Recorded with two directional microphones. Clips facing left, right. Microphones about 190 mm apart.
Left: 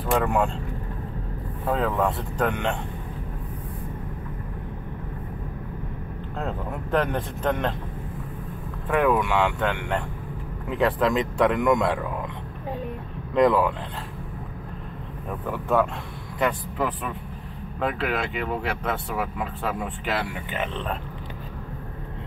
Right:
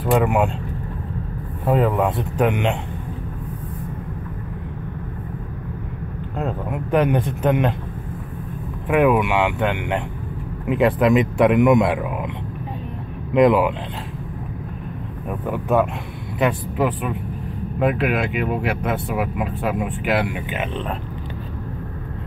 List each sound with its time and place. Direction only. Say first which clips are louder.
0.0 s speech: right 5 dB; 15° right (ahead or behind)
1.7 s speech: right 5 dB; 15° right (ahead or behind)
6.3 s speech: right 5 dB; 15° right (ahead or behind)
8.8 s speech: right 5 dB; 15° right (ahead or behind)
13.3 s speech: right 4 dB; 15° right (ahead or behind)
15.2 s speech: right 5 dB; 15° right (ahead or behind)